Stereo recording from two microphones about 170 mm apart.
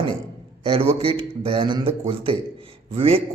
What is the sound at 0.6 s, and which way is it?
A man's voice, 35° right (ahead or behind).